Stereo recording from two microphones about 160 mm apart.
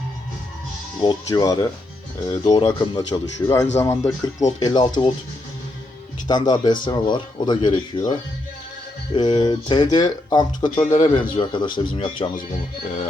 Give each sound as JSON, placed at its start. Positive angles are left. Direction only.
{"t": 1.0, "sound": "speech", "side_deg": 20}
{"t": 6.2, "sound": "speech", "side_deg": 25}